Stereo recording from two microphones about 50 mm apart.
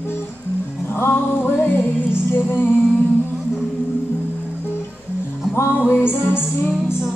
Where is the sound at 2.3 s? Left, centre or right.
Left.